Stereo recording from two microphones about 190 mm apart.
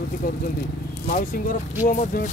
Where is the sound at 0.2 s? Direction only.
50° left (ahead or behind).